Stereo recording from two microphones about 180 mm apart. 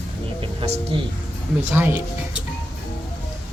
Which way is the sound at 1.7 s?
10° right (ahead or behind).